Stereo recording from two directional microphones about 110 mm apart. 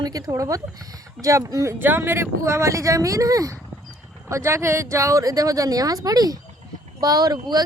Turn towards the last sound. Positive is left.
turn(degrees=-35)  # may be behind; listen again after turning